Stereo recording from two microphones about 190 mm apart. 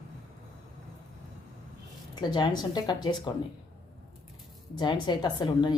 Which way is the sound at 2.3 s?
25° left (ahead or behind).